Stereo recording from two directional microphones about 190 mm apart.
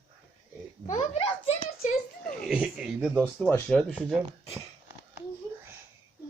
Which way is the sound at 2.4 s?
5° right (ahead or behind).